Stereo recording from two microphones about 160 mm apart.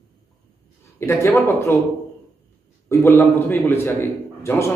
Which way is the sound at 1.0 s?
15° left (ahead or behind).